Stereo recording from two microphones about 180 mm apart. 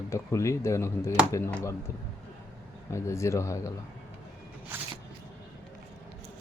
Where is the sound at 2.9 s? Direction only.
15° left (ahead or behind).